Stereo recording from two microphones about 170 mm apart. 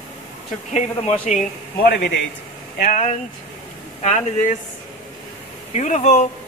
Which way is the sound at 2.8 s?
45° left (ahead or behind).